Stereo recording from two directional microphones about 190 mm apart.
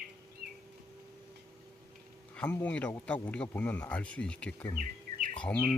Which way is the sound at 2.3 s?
10° left (ahead or behind).